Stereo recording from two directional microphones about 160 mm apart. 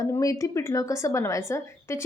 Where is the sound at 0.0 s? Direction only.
20° left (ahead or behind).